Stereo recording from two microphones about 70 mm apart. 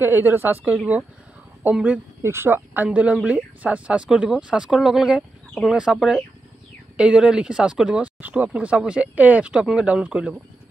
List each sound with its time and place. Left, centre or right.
0.0 s a woman's voice: right
1.6 s speech: centre
2.2 s speech: right; by 5.9 s centre
7.0 s speech: centre
8.2 s speech: right